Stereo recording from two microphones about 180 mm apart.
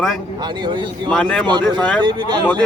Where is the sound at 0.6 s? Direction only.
25° right (ahead or behind).